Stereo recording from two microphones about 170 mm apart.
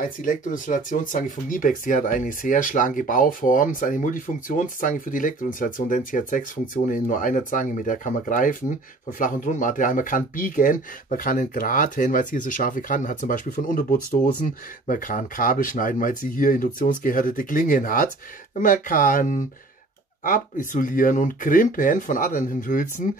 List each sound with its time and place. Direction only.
0.0 s speech: 50° left (ahead or behind)